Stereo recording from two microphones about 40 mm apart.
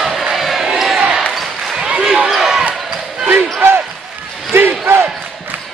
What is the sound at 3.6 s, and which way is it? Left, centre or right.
Basketball bounce, right.